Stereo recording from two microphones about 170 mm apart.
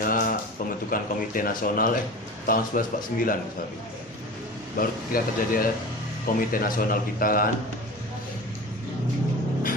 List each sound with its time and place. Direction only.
0.0 s a sound: 55° left (ahead or behind)
0.9 s speech: 55° left (ahead or behind)
4.8 s speech: 60° left (ahead or behind)